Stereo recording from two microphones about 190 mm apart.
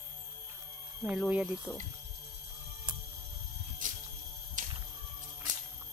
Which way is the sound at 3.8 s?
45° right (ahead or behind).